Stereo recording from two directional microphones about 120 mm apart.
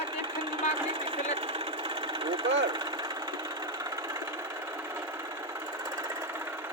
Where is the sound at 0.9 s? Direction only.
45° right (ahead or behind).